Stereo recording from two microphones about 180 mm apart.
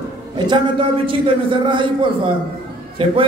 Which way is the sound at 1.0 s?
30° right (ahead or behind).